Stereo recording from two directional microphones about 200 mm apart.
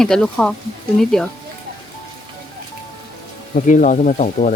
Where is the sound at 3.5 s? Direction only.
40° left (ahead or behind).